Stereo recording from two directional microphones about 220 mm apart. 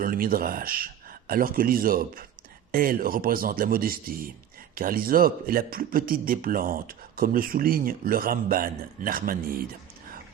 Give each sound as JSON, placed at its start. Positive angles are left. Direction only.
{"t": 0.0, "sound": "a man's voice", "side_deg": -40}